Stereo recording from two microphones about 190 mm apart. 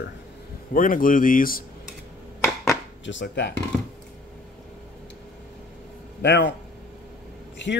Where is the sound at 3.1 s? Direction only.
70° left (ahead or behind).